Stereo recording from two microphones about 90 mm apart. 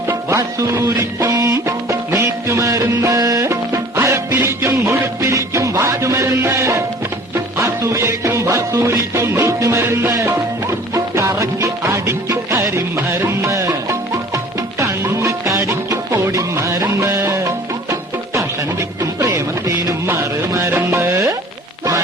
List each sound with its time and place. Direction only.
0.1 s music: 35° right (ahead or behind)